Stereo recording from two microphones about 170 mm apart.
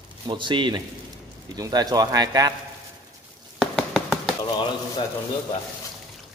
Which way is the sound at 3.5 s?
5° left (ahead or behind).